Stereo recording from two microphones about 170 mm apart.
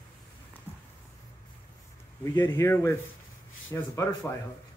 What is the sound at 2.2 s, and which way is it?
Speech, 15° left (ahead or behind).